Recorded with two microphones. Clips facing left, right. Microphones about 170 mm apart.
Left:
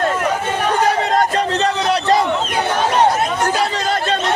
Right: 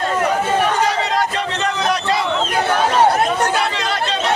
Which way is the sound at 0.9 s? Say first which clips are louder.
Left 3 dB; 50° left (ahead or behind).